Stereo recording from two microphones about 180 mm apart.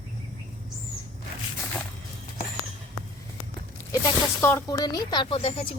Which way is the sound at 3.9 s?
15° left (ahead or behind).